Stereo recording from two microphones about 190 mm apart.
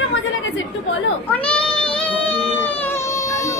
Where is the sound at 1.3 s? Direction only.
5° left (ahead or behind).